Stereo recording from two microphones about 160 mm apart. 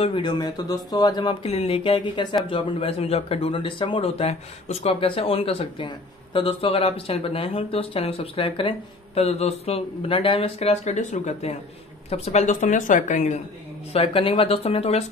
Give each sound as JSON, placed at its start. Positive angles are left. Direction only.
{"t": 0.0, "sound": "speech", "side_deg": 30}
{"t": 1.4, "sound": "a man's voice", "side_deg": 40}
{"t": 13.9, "sound": "a man's voice", "side_deg": 35}